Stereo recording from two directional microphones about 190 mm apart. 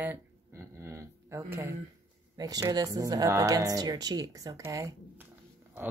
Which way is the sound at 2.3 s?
20° right (ahead or behind).